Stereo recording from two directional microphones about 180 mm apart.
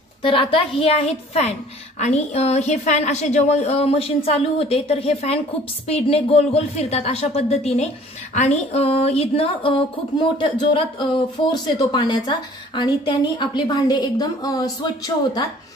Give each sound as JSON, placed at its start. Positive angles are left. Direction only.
{"t": 0.2, "sound": "a woman's voice", "side_deg": 30}